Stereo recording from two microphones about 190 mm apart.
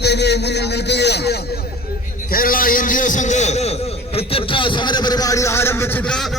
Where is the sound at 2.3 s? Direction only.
45° left (ahead or behind).